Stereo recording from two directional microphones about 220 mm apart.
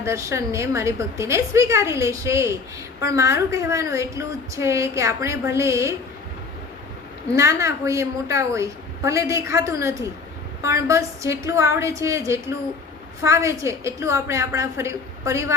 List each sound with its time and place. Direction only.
0.0 s a woman's voice: 15° right (ahead or behind)
7.3 s a woman's voice: 15° right (ahead or behind)